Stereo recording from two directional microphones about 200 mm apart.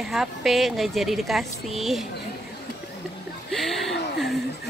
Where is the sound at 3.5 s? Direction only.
Centre (ahead or behind).